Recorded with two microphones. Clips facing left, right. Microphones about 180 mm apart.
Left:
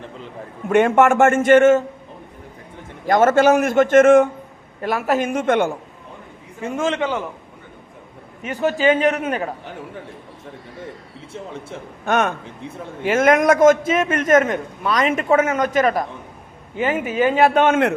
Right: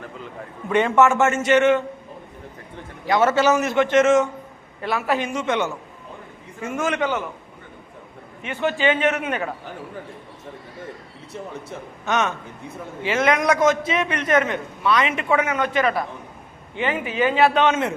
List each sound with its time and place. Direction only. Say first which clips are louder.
0.7 s a man's voice: left 3 dB; 50° left (ahead or behind)
3.1 s a man's voice: left 4 dB; 50° left (ahead or behind)
6.6 s a man's voice: left 2 dB; 30° left (ahead or behind)
8.4 s a man's voice: left 3 dB; 40° left (ahead or behind)
12.0 s a man's voice: left 4 dB; 50° left (ahead or behind)